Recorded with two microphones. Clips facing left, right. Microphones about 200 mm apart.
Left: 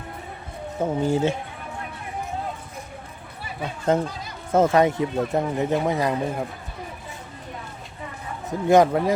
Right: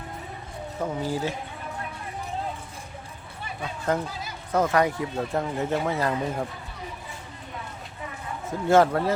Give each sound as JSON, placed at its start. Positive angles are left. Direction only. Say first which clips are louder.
{"t": 0.8, "sound": "speech", "louder": "left 6 dB", "side_deg": 25}
{"t": 3.9, "sound": "speech", "louder": "left 5 dB", "side_deg": 20}
{"t": 8.4, "sound": "speech", "louder": "left 3 dB", "side_deg": 15}